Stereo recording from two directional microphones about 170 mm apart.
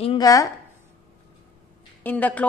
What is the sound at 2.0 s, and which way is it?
Speech, 10° left (ahead or behind).